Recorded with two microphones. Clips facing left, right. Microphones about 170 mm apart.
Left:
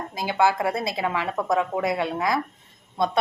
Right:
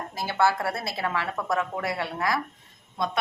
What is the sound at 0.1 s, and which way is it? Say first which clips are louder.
A woman's voice: left 2 dB; 15° left (ahead or behind).